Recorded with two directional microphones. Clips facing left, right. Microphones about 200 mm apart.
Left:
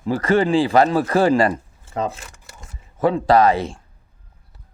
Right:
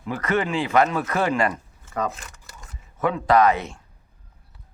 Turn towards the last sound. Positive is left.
turn(degrees=30)  # may be behind; listen again after turning